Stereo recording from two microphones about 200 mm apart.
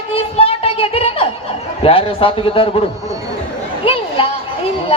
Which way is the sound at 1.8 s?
30° left (ahead or behind).